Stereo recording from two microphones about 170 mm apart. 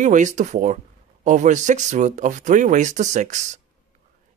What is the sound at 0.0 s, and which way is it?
Speech, 45° right (ahead or behind).